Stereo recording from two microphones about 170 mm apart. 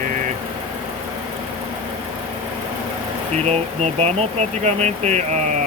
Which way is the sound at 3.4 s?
40° right (ahead or behind).